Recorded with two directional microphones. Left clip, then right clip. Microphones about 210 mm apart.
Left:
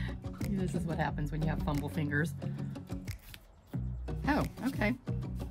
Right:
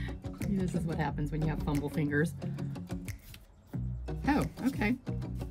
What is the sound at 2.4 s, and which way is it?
Music, centre (ahead or behind).